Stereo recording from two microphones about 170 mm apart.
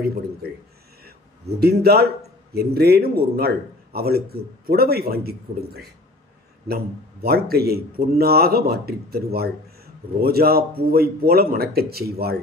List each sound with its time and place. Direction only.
1.6 s a man's voice: 70° right (ahead or behind)